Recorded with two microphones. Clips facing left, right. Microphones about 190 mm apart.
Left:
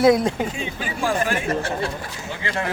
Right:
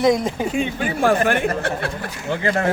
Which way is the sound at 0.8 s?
60° right (ahead or behind).